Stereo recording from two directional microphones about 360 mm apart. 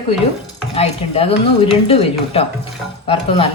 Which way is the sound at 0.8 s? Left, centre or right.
Centre.